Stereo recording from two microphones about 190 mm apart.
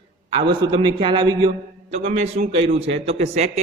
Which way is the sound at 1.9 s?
35° right (ahead or behind).